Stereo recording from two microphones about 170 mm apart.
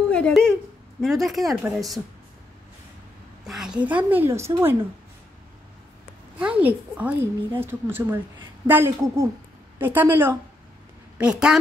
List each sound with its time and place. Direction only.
0.1 s a sound: 5° left (ahead or behind)
1.0 s speech: centre (ahead or behind)
3.4 s a woman's voice: centre (ahead or behind)
6.3 s a woman's voice: 10° right (ahead or behind)